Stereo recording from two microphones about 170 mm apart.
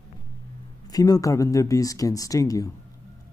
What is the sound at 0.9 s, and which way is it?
Speech, 20° left (ahead or behind).